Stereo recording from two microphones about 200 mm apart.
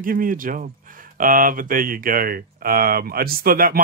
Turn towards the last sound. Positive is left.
turn(degrees=-45)  # may be behind; listen again after turning